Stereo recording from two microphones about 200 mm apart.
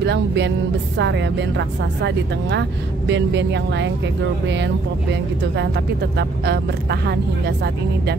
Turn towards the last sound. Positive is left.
turn(degrees=-55)  # may be behind; listen again after turning